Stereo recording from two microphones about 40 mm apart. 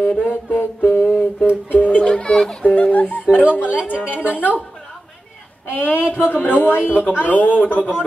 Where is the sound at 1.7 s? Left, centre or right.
Left.